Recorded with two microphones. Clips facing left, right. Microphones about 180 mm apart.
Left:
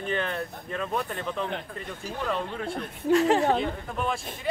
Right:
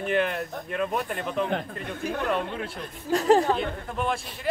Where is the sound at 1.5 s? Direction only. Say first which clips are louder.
Right 5 dB; 55° right (ahead or behind).